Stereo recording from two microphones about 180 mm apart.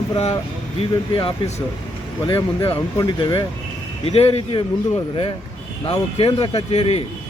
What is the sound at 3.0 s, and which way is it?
Speech, 25° left (ahead or behind).